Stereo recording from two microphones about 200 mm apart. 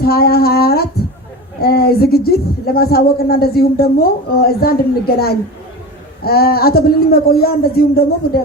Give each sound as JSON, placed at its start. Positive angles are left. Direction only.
{"t": 0.0, "sound": "speech", "side_deg": 50}